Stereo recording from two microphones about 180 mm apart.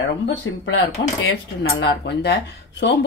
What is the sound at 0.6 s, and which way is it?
Speech, 90° left.